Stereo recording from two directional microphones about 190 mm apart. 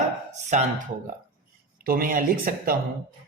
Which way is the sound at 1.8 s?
50° right (ahead or behind).